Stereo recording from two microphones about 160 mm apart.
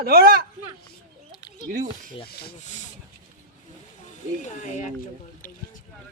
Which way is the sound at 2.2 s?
80° left.